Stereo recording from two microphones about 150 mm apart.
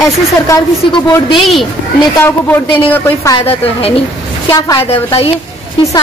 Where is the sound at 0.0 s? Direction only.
25° left (ahead or behind).